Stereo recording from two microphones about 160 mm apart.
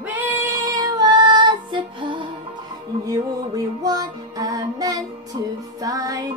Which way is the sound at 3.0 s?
20° right (ahead or behind).